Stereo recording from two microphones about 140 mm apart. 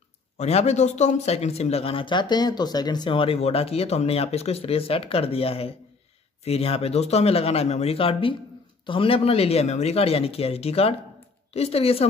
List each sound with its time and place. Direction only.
0.4 s speech: 50° left (ahead or behind)